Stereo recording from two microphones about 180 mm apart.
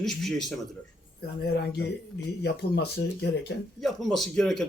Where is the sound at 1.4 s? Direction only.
65° left (ahead or behind).